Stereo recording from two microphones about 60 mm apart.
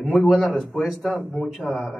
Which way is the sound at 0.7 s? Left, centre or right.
Left.